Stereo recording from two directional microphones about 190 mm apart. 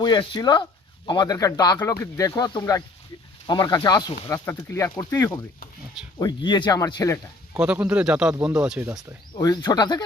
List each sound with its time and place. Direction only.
0.0 s speech: 20° left (ahead or behind)
7.5 s speech: 10° right (ahead or behind)
9.4 s speech: 20° left (ahead or behind)